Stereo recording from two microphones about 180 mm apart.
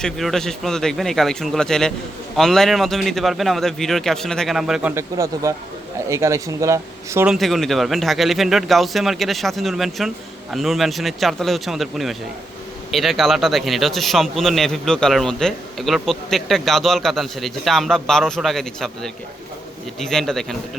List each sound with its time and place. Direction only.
0.0 s a man's voice: centre (ahead or behind); by 7.3 s 15° right (ahead or behind)
7.3 s a man's voice: centre (ahead or behind)